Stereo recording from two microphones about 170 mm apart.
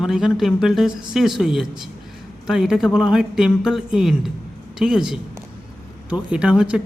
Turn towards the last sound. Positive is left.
turn(degrees=-5)  # may be behind; listen again after turning